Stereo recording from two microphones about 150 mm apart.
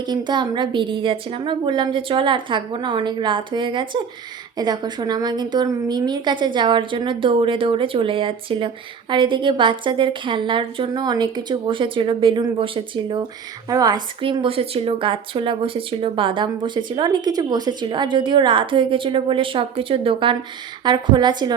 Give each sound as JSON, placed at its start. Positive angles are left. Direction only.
{"t": 0.0, "sound": "a woman's voice", "side_deg": -30}